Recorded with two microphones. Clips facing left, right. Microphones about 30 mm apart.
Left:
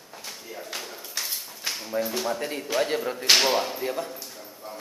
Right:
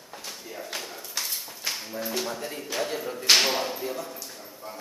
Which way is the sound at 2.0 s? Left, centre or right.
Centre.